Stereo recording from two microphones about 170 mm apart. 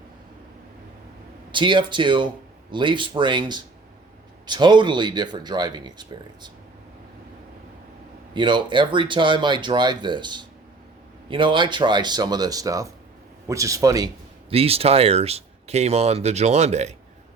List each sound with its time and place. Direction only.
1.5 s speech: 30° right (ahead or behind)
8.3 s speech: 25° right (ahead or behind)
14.5 s speech: 35° right (ahead or behind)